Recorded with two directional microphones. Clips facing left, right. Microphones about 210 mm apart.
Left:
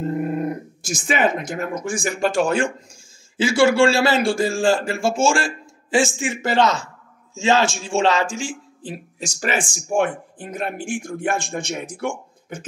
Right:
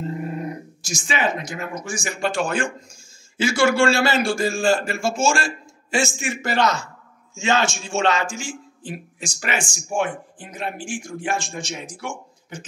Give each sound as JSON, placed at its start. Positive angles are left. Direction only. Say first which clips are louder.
{"t": 0.0, "sound": "a man's voice", "louder": "left 5 dB", "side_deg": 55}